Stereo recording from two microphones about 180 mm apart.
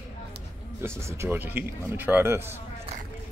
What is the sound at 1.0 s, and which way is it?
Speech, 15° right (ahead or behind).